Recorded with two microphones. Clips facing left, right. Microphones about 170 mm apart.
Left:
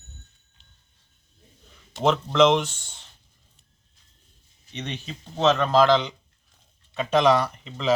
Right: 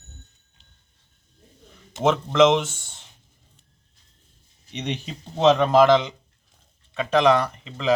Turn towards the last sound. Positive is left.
turn(degrees=0)  # may be behind; listen again after turning